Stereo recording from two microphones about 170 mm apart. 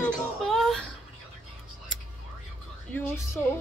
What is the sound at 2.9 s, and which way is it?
Speech, 15° left (ahead or behind).